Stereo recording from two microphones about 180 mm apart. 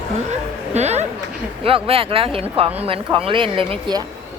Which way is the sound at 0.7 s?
40° right (ahead or behind).